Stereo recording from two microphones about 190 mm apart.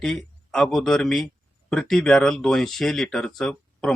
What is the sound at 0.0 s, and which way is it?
A man's voice, 5° left (ahead or behind).